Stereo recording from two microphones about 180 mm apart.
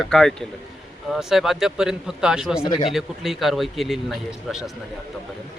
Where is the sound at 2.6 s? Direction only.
25° left (ahead or behind).